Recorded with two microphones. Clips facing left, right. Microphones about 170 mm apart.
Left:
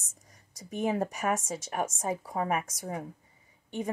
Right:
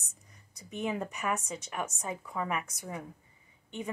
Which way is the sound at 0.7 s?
45° left (ahead or behind).